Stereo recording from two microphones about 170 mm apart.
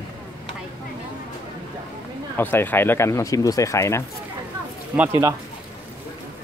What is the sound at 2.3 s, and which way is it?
Speech, 10° left (ahead or behind).